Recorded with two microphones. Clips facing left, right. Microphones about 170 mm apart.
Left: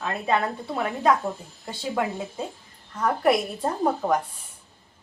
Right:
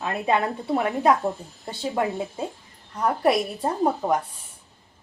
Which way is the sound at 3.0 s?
10° right (ahead or behind).